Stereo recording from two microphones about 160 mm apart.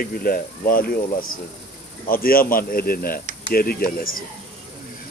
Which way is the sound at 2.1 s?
65° left (ahead or behind).